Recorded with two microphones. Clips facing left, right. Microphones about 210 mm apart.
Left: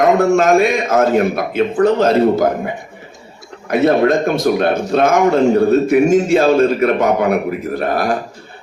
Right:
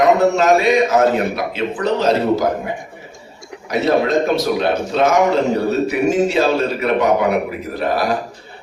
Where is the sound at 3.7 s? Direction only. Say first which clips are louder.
Left 4 dB; 50° left (ahead or behind).